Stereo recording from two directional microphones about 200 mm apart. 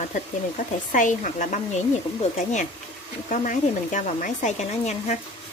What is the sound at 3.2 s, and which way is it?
Speech, 40° left (ahead or behind).